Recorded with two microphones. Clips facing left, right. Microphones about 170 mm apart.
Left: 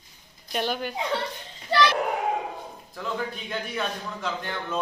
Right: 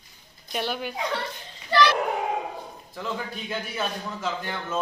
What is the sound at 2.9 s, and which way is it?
Speech, centre (ahead or behind).